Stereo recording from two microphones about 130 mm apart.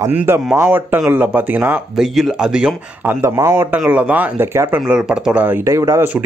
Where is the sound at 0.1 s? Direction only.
15° right (ahead or behind).